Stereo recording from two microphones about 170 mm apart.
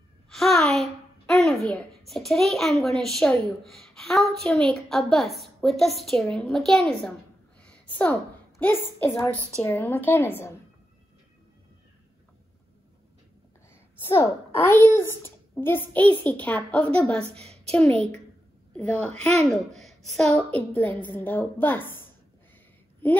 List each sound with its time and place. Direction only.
0.3 s a child's voice: centre (ahead or behind)
14.0 s a child's voice: 15° left (ahead or behind)
19.2 s a woman's voice: 5° left (ahead or behind)